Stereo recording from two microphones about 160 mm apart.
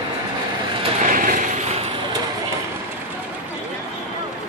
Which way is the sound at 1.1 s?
60° right (ahead or behind).